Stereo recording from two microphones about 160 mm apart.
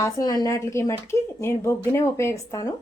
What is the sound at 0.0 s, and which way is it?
A woman's voice, 20° left (ahead or behind).